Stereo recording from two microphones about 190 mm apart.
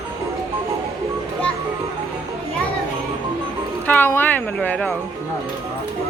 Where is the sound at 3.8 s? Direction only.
10° left (ahead or behind).